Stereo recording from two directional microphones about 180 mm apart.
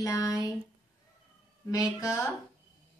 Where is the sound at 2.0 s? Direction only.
15° left (ahead or behind).